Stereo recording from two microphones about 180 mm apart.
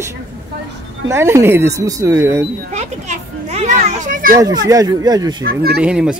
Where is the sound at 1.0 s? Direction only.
15° right (ahead or behind).